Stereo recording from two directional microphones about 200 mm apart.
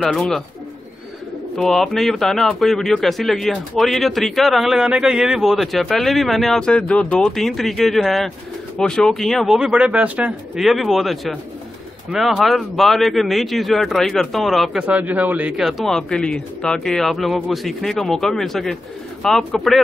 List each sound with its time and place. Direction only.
0.0 s speech: centre (ahead or behind)
1.6 s speech: 5° left (ahead or behind)